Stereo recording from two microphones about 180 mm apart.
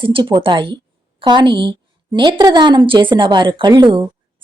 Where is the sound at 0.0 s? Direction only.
30° right (ahead or behind).